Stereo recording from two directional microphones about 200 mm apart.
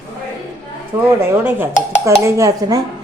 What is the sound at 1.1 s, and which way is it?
Speech, 10° right (ahead or behind).